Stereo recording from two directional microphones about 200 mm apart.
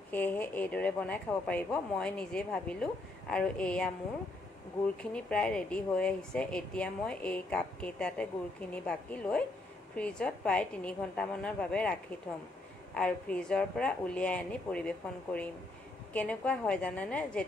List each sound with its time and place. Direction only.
0.1 s speech: 10° left (ahead or behind)
5.1 s a woman's voice: 5° left (ahead or behind)
12.9 s a woman's voice: 5° left (ahead or behind)